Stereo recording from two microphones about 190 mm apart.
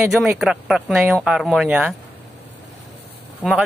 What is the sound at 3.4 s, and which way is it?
Speech, 5° right (ahead or behind).